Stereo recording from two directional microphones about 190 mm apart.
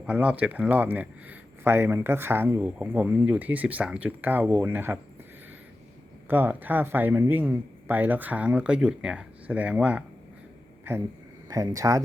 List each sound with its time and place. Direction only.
0.0 s speech: 5° right (ahead or behind)
6.2 s speech: 10° right (ahead or behind)
11.4 s speech: 15° right (ahead or behind)